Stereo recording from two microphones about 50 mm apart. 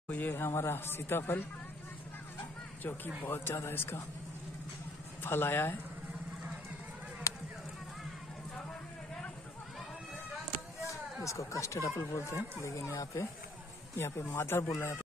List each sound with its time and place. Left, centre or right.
0.1 s speech: left
2.8 s speech: left
5.2 s speech: left
7.3 s a sound: left
11.2 s speech: left
12.1 s speech: left
12.8 s speech: left
14.3 s speech: left